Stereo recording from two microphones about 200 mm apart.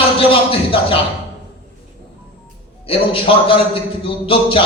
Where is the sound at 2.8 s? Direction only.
25° left (ahead or behind).